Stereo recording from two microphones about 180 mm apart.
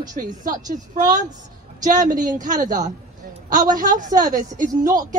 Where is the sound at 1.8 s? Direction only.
45° right (ahead or behind).